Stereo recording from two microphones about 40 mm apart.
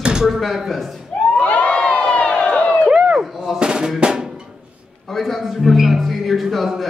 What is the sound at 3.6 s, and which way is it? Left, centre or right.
Drum, centre.